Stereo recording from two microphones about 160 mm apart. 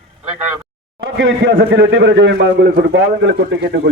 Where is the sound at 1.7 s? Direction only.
90° right.